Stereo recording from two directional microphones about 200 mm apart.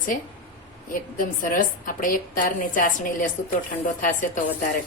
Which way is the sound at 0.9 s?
40° left (ahead or behind).